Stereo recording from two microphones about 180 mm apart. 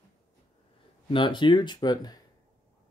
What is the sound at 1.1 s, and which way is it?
Speech, 25° left (ahead or behind).